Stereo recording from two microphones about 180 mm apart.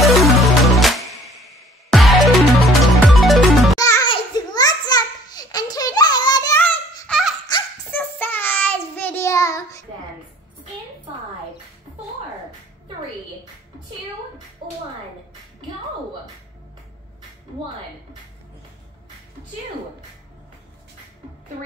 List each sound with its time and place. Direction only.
0.0 s music: centre (ahead or behind)
3.8 s music: 15° left (ahead or behind)
4.1 s a sound: 20° left (ahead or behind); by 7.3 s centre (ahead or behind)
7.9 s child singing: 10° left (ahead or behind)